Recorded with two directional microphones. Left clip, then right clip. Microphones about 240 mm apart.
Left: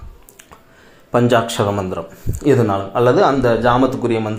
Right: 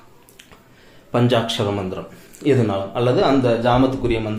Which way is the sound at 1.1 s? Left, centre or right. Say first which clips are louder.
Left 4 dB; centre.